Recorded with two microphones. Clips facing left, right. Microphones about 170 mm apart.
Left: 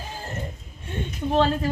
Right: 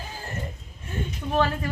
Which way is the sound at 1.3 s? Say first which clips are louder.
Left 3 dB; 25° left (ahead or behind).